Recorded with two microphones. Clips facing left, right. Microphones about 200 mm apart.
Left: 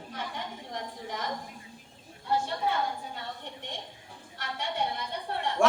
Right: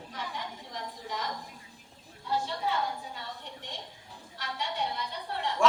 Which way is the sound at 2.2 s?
55° left (ahead or behind).